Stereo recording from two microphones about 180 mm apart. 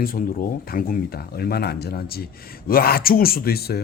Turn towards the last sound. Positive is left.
turn(degrees=60)  # may be behind; listen again after turning